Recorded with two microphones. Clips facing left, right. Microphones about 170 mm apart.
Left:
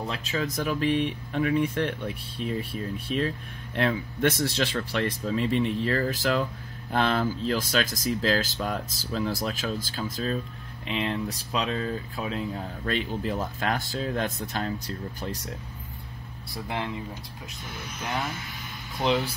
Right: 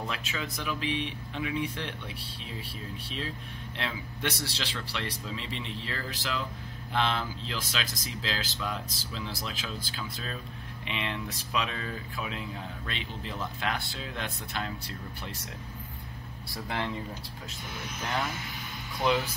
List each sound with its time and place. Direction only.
0.0 s speech: 35° left (ahead or behind)
16.6 s speech: 15° left (ahead or behind)